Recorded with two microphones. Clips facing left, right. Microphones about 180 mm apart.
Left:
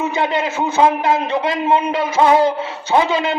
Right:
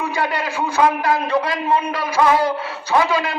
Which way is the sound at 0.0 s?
20° left (ahead or behind).